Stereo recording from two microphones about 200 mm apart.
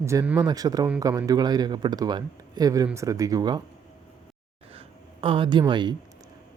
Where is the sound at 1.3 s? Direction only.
20° right (ahead or behind).